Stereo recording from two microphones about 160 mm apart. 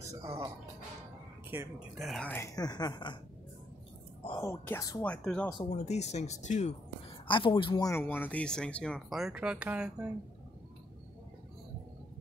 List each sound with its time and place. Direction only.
0.1 s speech: 20° right (ahead or behind)
2.0 s speech: centre (ahead or behind)
2.5 s speech: 25° left (ahead or behind)
4.3 s speech: 20° left (ahead or behind)
5.0 s speech: 5° left (ahead or behind)
5.7 s speech: 45° left (ahead or behind)
7.2 s speech: 30° left (ahead or behind)
7.9 s speech: 15° left (ahead or behind); by 10.0 s 5° right (ahead or behind)